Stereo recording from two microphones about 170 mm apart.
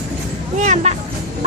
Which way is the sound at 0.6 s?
45° right (ahead or behind).